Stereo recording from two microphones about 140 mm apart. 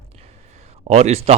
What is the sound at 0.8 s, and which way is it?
Speech, 50° right (ahead or behind).